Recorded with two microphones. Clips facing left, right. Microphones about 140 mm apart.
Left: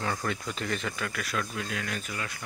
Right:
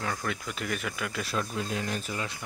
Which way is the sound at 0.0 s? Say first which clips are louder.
Left 1 dB; centre (ahead or behind).